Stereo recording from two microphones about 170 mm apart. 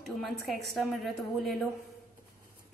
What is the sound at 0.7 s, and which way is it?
Speech, centre (ahead or behind).